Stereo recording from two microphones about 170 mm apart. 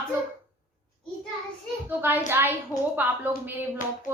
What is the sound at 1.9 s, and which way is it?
A woman's voice, 10° right (ahead or behind).